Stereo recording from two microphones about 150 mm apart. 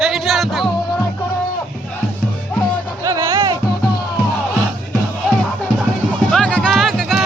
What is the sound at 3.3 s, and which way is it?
Music, 30° right (ahead or behind).